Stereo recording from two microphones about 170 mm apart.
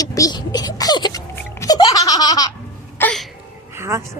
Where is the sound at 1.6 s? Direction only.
20° left (ahead or behind).